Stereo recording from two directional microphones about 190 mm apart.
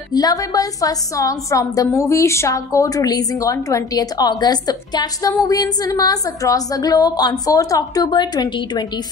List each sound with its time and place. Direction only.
0.1 s a woman's voice: 20° left (ahead or behind)